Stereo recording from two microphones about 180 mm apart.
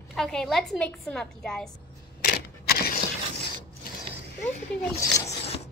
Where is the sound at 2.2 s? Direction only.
60° left (ahead or behind).